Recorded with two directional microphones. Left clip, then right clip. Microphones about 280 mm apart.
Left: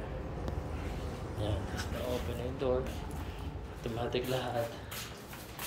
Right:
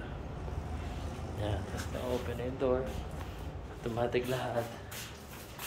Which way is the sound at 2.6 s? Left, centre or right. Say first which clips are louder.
Right 2 dB; centre.